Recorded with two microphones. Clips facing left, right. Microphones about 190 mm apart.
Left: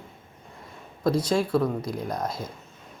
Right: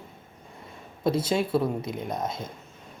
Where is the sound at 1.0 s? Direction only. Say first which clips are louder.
Left 1 dB; 25° right (ahead or behind).